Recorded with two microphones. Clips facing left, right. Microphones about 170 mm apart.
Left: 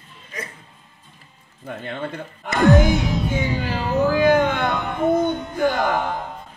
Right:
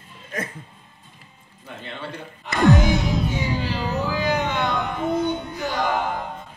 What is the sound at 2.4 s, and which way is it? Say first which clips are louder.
Music: left 3 dB; 50° left (ahead or behind).